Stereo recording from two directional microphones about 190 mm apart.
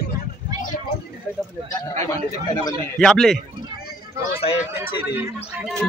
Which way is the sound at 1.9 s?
30° right (ahead or behind).